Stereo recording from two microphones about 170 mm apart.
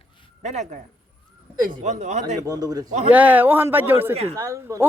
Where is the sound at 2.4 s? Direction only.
20° right (ahead or behind).